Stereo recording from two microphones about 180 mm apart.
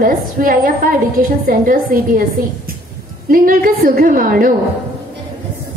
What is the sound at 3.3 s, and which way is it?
A woman's voice, 50° right (ahead or behind).